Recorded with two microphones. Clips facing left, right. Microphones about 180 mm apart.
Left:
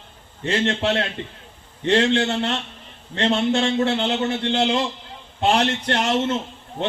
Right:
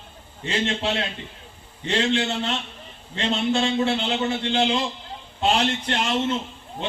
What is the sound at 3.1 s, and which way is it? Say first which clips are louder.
A man's voice: left 3 dB; 65° left (ahead or behind).